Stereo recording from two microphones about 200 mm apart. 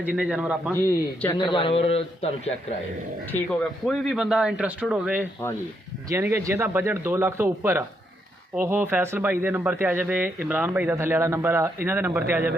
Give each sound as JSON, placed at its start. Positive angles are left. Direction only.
{"t": 0.0, "sound": "speech", "side_deg": -5}
{"t": 0.7, "sound": "speech", "side_deg": 15}
{"t": 1.4, "sound": "a man's voice", "side_deg": 25}
{"t": 3.2, "sound": "speech", "side_deg": 5}